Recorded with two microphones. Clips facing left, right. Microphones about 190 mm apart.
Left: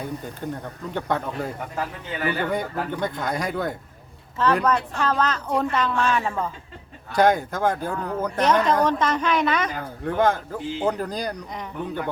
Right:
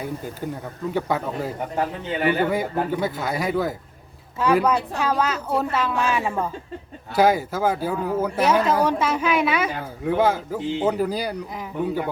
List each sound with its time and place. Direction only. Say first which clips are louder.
0.0 s speech: right 1 dB; 5° right (ahead or behind)
1.7 s speech: right 5 dB; 25° right (ahead or behind)
2.9 s speech: right 2 dB; 5° right (ahead or behind)